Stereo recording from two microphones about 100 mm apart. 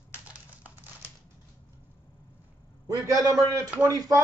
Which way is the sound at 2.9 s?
35° right (ahead or behind).